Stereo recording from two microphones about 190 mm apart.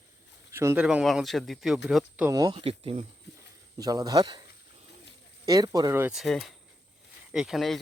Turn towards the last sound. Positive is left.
turn(degrees=0)  # may be behind; listen again after turning